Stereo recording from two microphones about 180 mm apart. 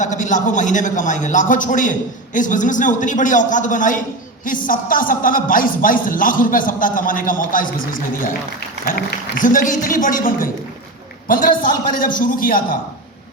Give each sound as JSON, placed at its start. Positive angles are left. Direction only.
{"t": 0.0, "sound": "a man's voice", "side_deg": 45}